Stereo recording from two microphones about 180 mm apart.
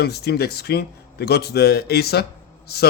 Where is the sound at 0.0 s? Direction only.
65° left (ahead or behind).